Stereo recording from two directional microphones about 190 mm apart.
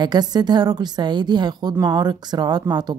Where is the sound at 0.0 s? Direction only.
20° right (ahead or behind).